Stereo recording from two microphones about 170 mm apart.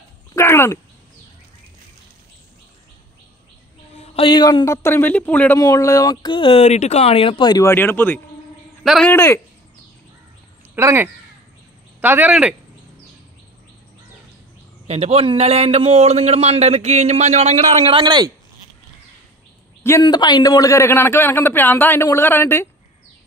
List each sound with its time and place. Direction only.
0.3 s a sound: 15° left (ahead or behind)
3.9 s a man's voice: 35° left (ahead or behind)
7.6 s a man's voice: 10° left (ahead or behind)
8.8 s speech: centre (ahead or behind)
9.1 s a man's voice: 15° left (ahead or behind)
10.7 s speech: 15° right (ahead or behind)
14.9 s a man's voice: 40° right (ahead or behind)
20.0 s a man's voice: 25° left (ahead or behind)